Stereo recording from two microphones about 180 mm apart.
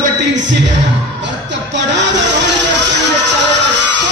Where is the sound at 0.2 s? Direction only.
80° right.